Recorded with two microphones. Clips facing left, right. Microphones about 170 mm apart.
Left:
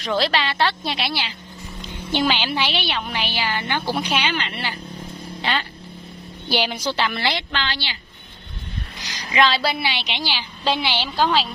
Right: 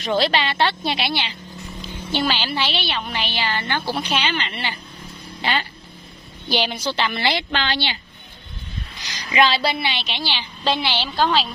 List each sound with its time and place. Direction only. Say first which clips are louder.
0.2 s a woman's voice: even; centre (ahead or behind)
2.1 s a woman's voice: left 1 dB; 15° left (ahead or behind); by 5.7 s 5° right (ahead or behind)
6.5 s a woman's voice: even; 10° left (ahead or behind)
7.1 s a woman's voice: right 2 dB; centre (ahead or behind)
7.5 s a woman's voice: right 4 dB; 20° right (ahead or behind)
9.3 s a woman's voice: right 1 dB; 5° right (ahead or behind)